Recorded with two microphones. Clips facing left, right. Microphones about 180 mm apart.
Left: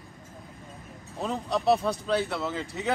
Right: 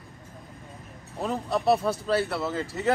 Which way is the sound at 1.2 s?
Centre (ahead or behind).